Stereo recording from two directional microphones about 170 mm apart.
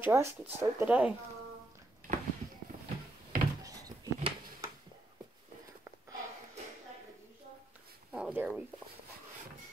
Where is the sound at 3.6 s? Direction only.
20° right (ahead or behind).